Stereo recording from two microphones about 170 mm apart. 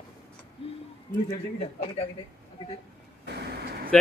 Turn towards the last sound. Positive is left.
turn(degrees=-70)  # may be behind; listen again after turning